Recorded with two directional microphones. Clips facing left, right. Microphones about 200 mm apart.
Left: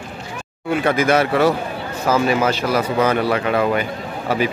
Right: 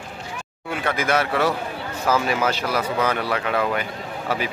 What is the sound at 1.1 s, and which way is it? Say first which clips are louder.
Speech: left 4 dB; 15° left (ahead or behind).